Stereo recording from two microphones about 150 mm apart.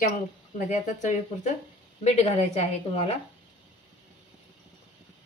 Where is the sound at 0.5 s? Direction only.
50° left (ahead or behind).